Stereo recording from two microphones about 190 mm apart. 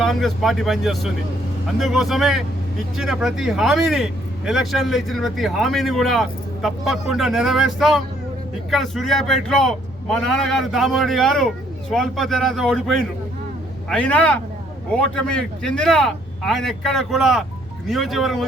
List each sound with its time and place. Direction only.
0.0 s speech: centre (ahead or behind)